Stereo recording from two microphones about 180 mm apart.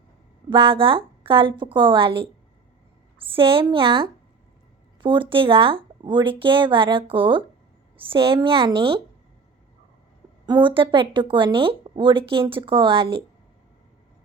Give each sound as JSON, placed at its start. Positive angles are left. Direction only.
{"t": 0.5, "sound": "speech", "side_deg": -30}
{"t": 3.2, "sound": "speech", "side_deg": -30}
{"t": 10.4, "sound": "speech", "side_deg": -25}